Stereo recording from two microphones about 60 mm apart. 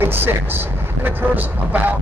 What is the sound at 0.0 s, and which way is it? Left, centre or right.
Speech, right.